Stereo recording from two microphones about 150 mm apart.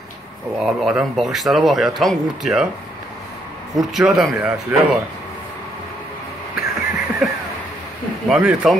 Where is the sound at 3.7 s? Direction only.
Centre (ahead or behind).